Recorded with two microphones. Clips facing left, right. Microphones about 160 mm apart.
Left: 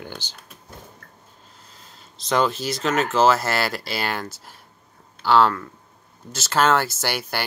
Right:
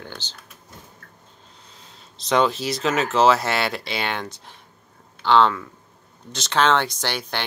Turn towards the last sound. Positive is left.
turn(degrees=10)  # may be behind; listen again after turning